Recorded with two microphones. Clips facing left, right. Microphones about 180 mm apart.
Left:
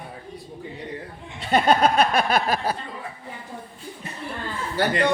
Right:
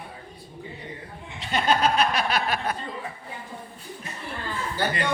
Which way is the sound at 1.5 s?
55° left (ahead or behind).